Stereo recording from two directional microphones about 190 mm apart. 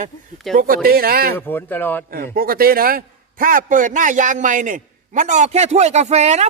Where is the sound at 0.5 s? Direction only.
50° right (ahead or behind).